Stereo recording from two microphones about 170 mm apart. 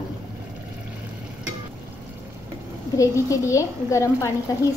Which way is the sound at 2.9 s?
20° left (ahead or behind).